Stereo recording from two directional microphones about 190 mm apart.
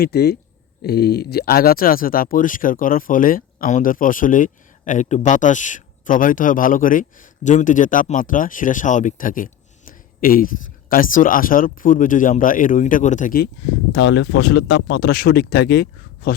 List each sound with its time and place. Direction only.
0.0 s speech: 55° left (ahead or behind)
13.9 s speech: 65° left (ahead or behind)